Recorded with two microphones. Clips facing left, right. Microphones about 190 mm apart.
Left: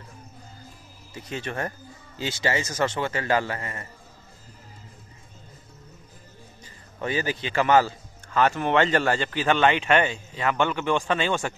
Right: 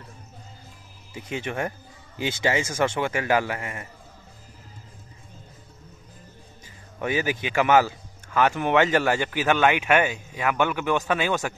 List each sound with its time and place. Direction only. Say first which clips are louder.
1.1 s a man's voice: right 2 dB; 15° right (ahead or behind)
7.0 s a man's voice: right 2 dB; 10° right (ahead or behind)